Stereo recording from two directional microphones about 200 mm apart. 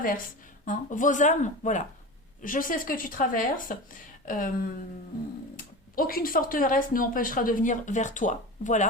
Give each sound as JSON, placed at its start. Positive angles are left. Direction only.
{"t": 0.6, "sound": "speech", "side_deg": 40}
{"t": 5.5, "sound": "speech", "side_deg": 45}